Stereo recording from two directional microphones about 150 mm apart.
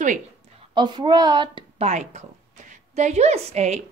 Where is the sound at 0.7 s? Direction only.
30° right (ahead or behind).